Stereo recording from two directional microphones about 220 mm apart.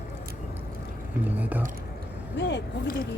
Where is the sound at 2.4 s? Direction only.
50° left (ahead or behind).